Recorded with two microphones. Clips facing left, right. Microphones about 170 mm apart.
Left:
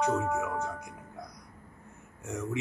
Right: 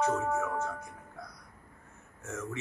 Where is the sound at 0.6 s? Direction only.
15° left (ahead or behind).